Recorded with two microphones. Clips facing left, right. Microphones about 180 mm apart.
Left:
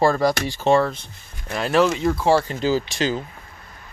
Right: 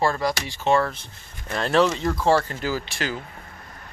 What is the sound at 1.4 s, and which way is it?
Speech, 5° left (ahead or behind).